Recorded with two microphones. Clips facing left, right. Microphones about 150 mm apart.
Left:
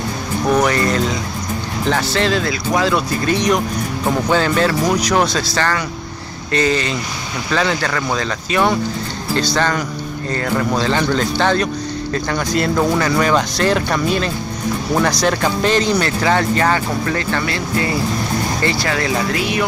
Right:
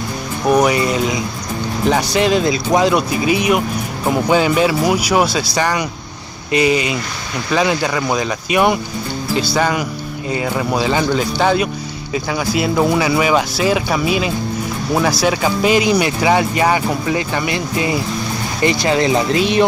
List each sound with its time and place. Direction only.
0.5 s speech: 10° right (ahead or behind)